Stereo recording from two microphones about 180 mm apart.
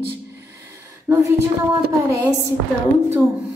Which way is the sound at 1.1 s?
10° right (ahead or behind).